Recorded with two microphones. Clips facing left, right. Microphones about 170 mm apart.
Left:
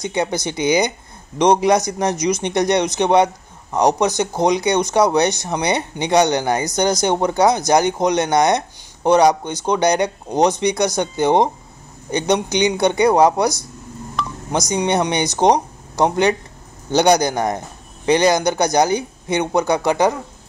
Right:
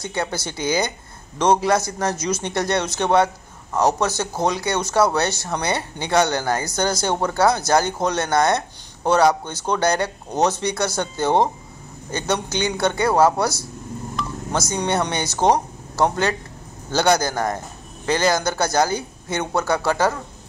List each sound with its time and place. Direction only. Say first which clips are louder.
0.0 s speech: left 5 dB; 15° left (ahead or behind)